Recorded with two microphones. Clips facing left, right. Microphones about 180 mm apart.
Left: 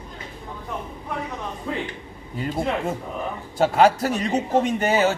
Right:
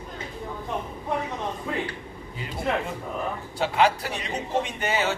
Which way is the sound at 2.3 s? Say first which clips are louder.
Left 3 dB; 45° left (ahead or behind).